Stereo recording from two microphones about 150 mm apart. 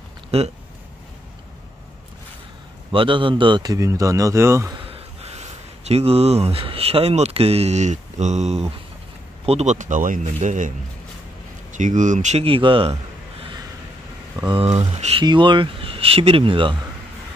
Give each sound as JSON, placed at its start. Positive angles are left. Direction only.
{"t": 0.3, "sound": "speech", "side_deg": -45}
{"t": 2.9, "sound": "speech", "side_deg": -35}
{"t": 4.8, "sound": "speech", "side_deg": -40}
{"t": 11.7, "sound": "speech", "side_deg": -55}
{"t": 14.5, "sound": "speech", "side_deg": -40}
{"t": 15.2, "sound": "speech", "side_deg": -30}